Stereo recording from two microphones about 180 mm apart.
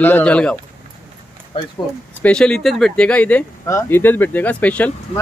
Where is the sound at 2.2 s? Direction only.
5° left (ahead or behind).